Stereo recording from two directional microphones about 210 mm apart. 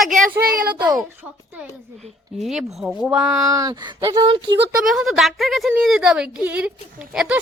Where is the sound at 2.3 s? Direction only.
Centre (ahead or behind).